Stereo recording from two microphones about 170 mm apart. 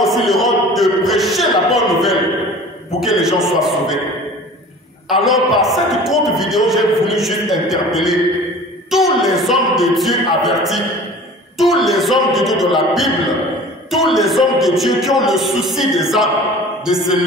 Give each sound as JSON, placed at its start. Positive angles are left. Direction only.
{"t": 0.0, "sound": "a sound", "side_deg": 0}
{"t": 3.0, "sound": "a man's voice", "side_deg": 0}
{"t": 5.1, "sound": "a man's voice", "side_deg": 0}